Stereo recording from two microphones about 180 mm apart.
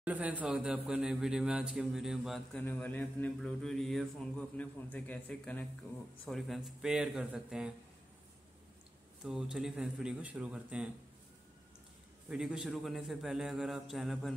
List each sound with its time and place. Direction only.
0.0 s a man's voice: 10° right (ahead or behind)
2.6 s a man's voice: 10° left (ahead or behind)
9.2 s a man's voice: 5° right (ahead or behind)
12.3 s a man's voice: 5° right (ahead or behind)